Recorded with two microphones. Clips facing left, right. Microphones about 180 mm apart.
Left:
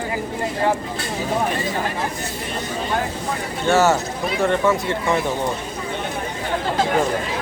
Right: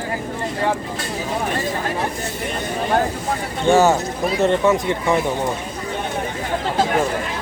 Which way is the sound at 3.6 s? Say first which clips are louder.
Right 2 dB; 15° right (ahead or behind).